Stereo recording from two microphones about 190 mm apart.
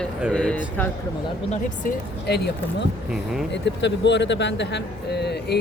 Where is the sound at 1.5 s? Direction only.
40° left (ahead or behind).